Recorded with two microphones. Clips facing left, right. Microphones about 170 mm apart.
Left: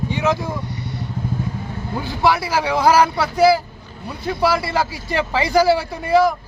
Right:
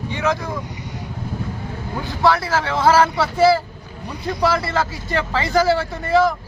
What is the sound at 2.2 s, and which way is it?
Speech, 15° left (ahead or behind).